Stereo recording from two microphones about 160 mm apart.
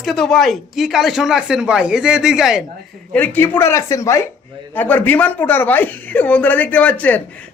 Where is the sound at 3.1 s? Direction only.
10° left (ahead or behind).